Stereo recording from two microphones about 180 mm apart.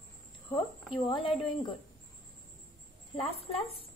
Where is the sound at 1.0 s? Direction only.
30° left (ahead or behind).